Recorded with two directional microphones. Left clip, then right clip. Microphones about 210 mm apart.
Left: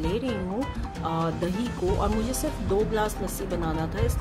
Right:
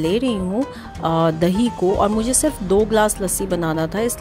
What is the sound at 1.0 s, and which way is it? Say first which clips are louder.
Speech: right 11 dB; 35° right (ahead or behind).